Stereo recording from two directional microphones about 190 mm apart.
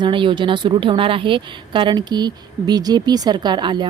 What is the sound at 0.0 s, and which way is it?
A woman's voice, 25° right (ahead or behind).